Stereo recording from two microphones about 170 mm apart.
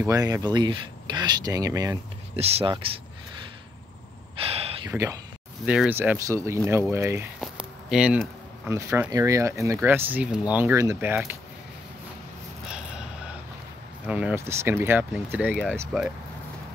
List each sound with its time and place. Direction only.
0.0 s speech: 20° right (ahead or behind)
2.3 s speech: 35° right (ahead or behind)
4.4 s gasp: 35° right (ahead or behind)
4.8 s speech: 20° right (ahead or behind)
5.7 s speech: 10° right (ahead or behind)
7.3 s a sound: 5° right (ahead or behind)
8.6 s speech: 15° right (ahead or behind)
12.6 s snort: 5° right (ahead or behind)
14.0 s speech: 10° right (ahead or behind)